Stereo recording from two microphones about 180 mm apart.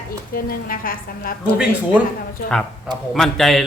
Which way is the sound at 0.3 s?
55° left (ahead or behind).